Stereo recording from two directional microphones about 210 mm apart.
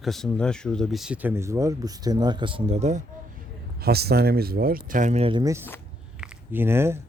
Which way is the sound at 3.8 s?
50° right (ahead or behind).